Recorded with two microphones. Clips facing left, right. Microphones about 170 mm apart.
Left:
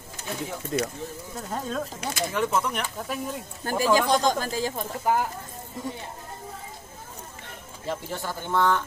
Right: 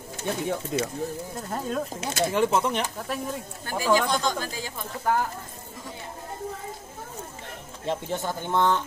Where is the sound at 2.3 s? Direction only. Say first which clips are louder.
Right 3 dB; 30° right (ahead or behind).